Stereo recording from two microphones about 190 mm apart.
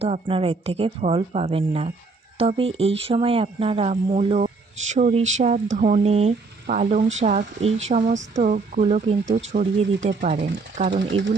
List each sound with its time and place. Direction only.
0.0 s speech: 30° right (ahead or behind); by 10.2 s 45° right (ahead or behind)
10.9 s speech: 85° right